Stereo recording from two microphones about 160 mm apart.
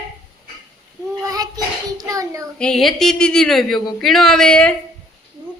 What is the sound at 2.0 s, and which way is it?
Child singing, 20° right (ahead or behind).